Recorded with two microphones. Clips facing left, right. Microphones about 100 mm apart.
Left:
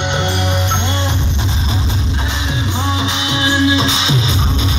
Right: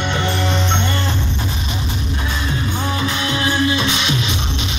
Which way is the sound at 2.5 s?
20° left (ahead or behind).